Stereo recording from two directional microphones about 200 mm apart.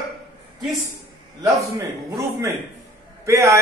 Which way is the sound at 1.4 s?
15° right (ahead or behind).